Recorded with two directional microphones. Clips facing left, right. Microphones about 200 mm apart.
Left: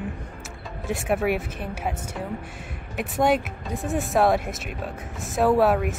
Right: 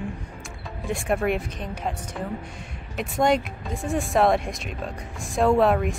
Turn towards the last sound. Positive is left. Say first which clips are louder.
# even
turn(degrees=5)  # may be behind; listen again after turning